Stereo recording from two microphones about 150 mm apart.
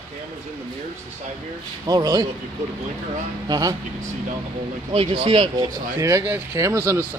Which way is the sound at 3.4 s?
25° right (ahead or behind).